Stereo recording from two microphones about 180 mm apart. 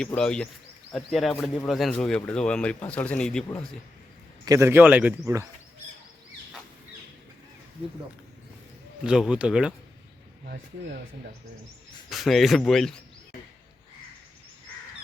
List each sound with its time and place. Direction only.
0.0 s speech: 5° left (ahead or behind)
4.4 s speech: 15° right (ahead or behind)
9.0 s speech: 5° right (ahead or behind)
10.4 s speech: 55° right (ahead or behind)
12.0 s speech: centre (ahead or behind)